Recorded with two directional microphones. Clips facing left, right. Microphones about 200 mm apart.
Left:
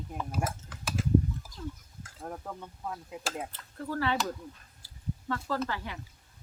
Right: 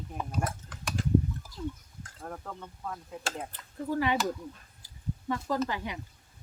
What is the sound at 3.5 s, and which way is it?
Speech, 15° right (ahead or behind).